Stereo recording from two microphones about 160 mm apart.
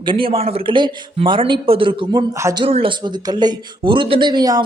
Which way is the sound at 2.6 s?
35° right (ahead or behind).